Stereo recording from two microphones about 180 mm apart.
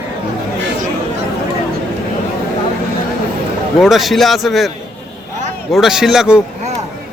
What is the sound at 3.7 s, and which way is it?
Speech, centre (ahead or behind).